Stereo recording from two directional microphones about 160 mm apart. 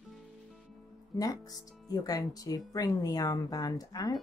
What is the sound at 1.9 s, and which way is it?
Speech, 20° left (ahead or behind).